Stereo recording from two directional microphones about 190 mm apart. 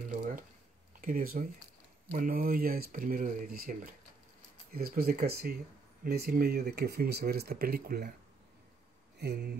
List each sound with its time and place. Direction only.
0.1 s a sound: 45° right (ahead or behind)
1.0 s speech: 50° right (ahead or behind)
9.2 s speech: 60° right (ahead or behind)